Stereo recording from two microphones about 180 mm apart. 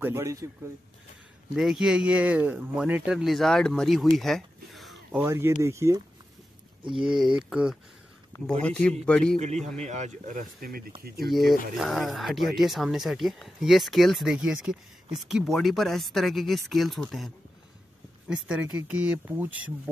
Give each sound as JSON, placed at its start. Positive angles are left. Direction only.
{"t": 0.0, "sound": "speech", "side_deg": -15}
{"t": 1.5, "sound": "speech", "side_deg": 0}
{"t": 4.2, "sound": "a sound", "side_deg": 0}
{"t": 5.2, "sound": "speech", "side_deg": -15}
{"t": 6.8, "sound": "speech", "side_deg": -25}
{"t": 7.2, "sound": "speech", "side_deg": -5}
{"t": 9.4, "sound": "a man's voice", "side_deg": -40}
{"t": 11.2, "sound": "speech", "side_deg": 0}
{"t": 18.3, "sound": "speech", "side_deg": -5}